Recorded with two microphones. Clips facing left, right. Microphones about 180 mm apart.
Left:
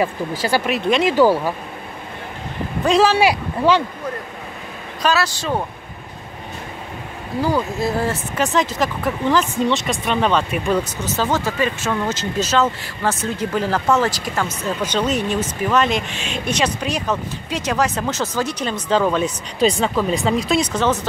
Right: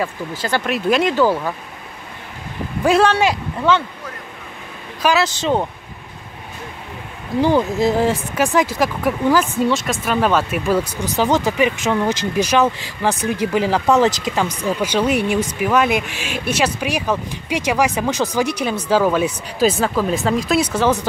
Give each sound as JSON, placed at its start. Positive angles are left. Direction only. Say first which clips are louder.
{"t": 0.0, "sound": "speech", "louder": "left 3 dB", "side_deg": 10}
{"t": 0.7, "sound": "speech", "louder": "right 3 dB", "side_deg": 0}
{"t": 1.1, "sound": "speech", "louder": "left 2 dB", "side_deg": 10}
{"t": 2.8, "sound": "speech", "louder": "right 1 dB", "side_deg": -5}
{"t": 3.1, "sound": "speech", "louder": "left 1 dB", "side_deg": 10}
{"t": 5.0, "sound": "speech", "louder": "right 3 dB", "side_deg": -20}
{"t": 7.4, "sound": "speech", "louder": "right 4 dB", "side_deg": -20}